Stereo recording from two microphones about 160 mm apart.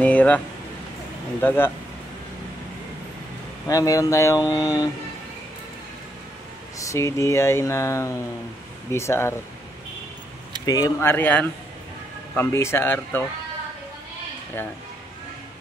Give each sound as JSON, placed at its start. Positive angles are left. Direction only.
{"t": 0.0, "sound": "speech", "side_deg": 10}
{"t": 1.4, "sound": "speech", "side_deg": 15}
{"t": 3.6, "sound": "speech", "side_deg": 20}
{"t": 6.8, "sound": "speech", "side_deg": 20}
{"t": 10.6, "sound": "speech", "side_deg": 25}